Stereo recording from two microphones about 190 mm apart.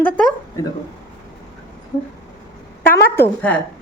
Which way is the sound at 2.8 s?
10° left (ahead or behind).